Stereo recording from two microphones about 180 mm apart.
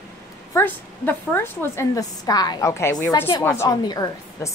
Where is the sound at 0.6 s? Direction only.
10° left (ahead or behind).